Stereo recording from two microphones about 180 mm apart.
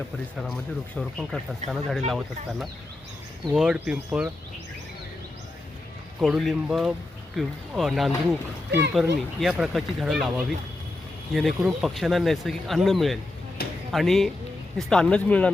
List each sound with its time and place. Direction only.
0.3 s speech: centre (ahead or behind)
6.1 s speech: centre (ahead or behind)
13.6 s speech: 60° left (ahead or behind)
13.9 s speech: centre (ahead or behind)